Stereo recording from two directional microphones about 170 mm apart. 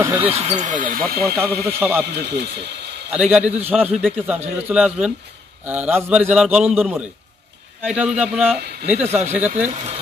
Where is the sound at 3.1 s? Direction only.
5° right (ahead or behind).